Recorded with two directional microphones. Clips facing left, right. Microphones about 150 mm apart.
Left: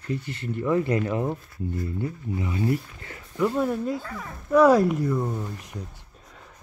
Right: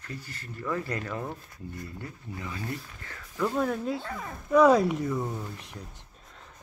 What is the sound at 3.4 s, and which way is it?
A woman's voice, 5° left (ahead or behind).